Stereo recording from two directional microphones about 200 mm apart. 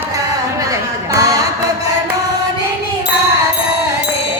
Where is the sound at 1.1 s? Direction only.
15° right (ahead or behind).